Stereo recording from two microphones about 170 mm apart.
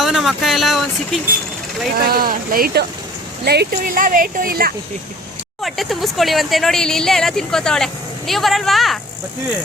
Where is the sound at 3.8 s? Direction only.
55° right (ahead or behind).